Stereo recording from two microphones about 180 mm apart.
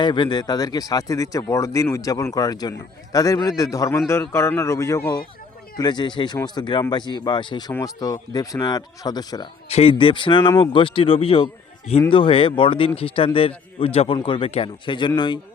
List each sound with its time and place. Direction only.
0.0 s speech: 25° left (ahead or behind)
9.6 s speech: 30° left (ahead or behind)